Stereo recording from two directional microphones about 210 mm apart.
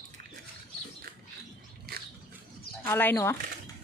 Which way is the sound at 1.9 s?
45° right (ahead or behind).